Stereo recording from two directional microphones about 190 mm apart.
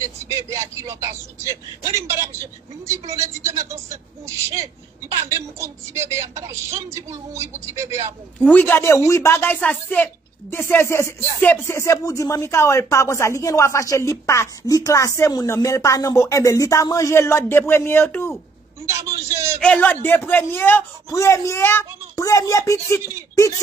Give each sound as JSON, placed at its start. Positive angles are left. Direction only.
{"t": 0.5, "sound": "a woman's voice", "side_deg": -15}
{"t": 5.3, "sound": "a woman's voice", "side_deg": -15}
{"t": 8.4, "sound": "speech", "side_deg": 10}
{"t": 18.9, "sound": "a woman's voice", "side_deg": -15}
{"t": 19.6, "sound": "speech", "side_deg": 10}